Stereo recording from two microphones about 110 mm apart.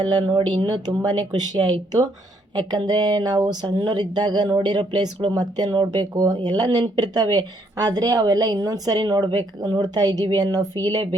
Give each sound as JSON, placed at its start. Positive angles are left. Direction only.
{"t": 0.0, "sound": "speech", "side_deg": -45}